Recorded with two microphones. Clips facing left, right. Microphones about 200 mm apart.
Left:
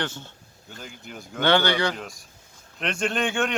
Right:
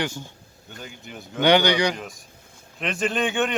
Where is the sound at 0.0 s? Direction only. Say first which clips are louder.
Right 3 dB; 10° right (ahead or behind).